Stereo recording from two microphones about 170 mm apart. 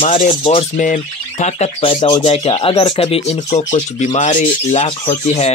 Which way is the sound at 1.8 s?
30° left (ahead or behind).